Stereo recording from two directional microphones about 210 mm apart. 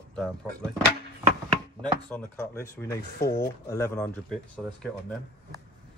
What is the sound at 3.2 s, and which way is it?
Speech, 45° left (ahead or behind).